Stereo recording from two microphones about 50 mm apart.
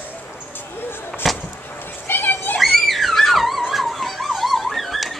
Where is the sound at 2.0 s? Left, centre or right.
Left.